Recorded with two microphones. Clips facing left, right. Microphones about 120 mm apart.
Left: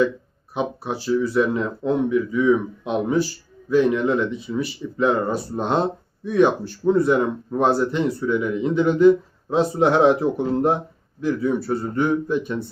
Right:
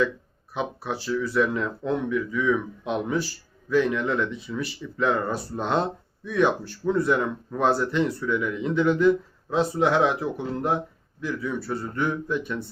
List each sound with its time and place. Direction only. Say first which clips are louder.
0.5 s speech: left 4 dB; 20° left (ahead or behind)